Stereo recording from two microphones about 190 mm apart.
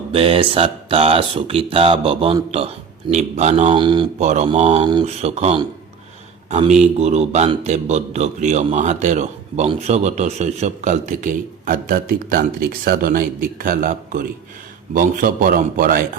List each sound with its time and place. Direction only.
0.1 s a man's voice: 30° right (ahead or behind)
4.2 s a man's voice: 35° right (ahead or behind)